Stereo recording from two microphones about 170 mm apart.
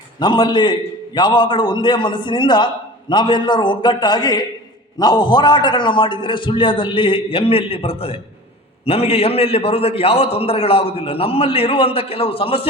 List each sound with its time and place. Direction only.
0.2 s a man's voice: 25° left (ahead or behind)